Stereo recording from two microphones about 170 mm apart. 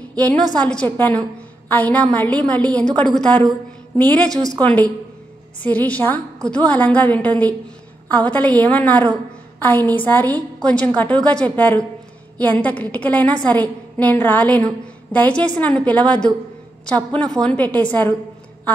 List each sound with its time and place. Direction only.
0.1 s a woman's voice: 10° left (ahead or behind)
4.3 s speech: 20° right (ahead or behind)
4.6 s a woman's voice: 10° left (ahead or behind)